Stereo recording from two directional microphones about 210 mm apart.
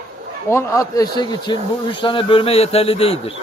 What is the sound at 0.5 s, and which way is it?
Speech, 15° left (ahead or behind).